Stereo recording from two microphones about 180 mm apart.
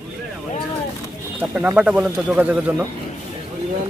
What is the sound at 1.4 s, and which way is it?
Speech, 10° right (ahead or behind).